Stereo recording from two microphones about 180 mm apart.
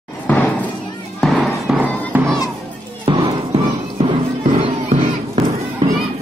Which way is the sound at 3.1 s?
25° right (ahead or behind).